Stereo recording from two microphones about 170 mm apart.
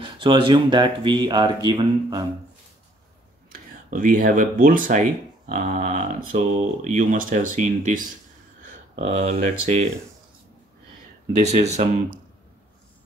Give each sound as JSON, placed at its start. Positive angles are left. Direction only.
{"t": 0.0, "sound": "speech", "side_deg": -30}
{"t": 3.9, "sound": "speech", "side_deg": -50}
{"t": 11.3, "sound": "speech", "side_deg": -40}